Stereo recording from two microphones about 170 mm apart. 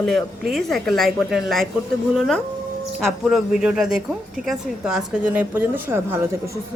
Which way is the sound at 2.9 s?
Centre (ahead or behind).